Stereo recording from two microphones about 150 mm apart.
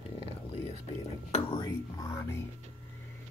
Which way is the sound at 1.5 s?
25° left (ahead or behind).